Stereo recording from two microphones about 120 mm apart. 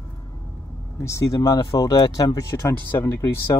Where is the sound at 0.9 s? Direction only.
25° left (ahead or behind).